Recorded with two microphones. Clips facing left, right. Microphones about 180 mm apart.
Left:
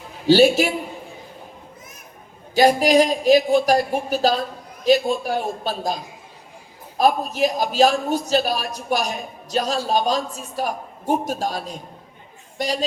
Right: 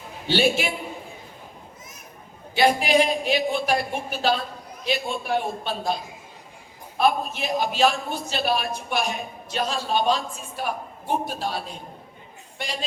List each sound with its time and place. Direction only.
0.3 s a man's voice: 40° left (ahead or behind)
2.6 s a man's voice: 40° left (ahead or behind)